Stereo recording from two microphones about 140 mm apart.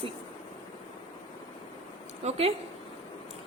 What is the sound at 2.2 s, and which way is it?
Speech, 50° right (ahead or behind).